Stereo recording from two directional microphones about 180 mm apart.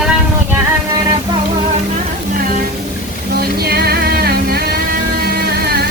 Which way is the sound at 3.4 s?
60° right (ahead or behind).